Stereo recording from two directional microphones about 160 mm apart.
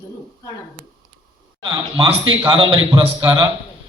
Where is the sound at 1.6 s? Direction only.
30° right (ahead or behind).